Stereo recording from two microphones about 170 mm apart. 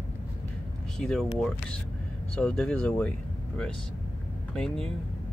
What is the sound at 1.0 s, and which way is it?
Speech, centre (ahead or behind).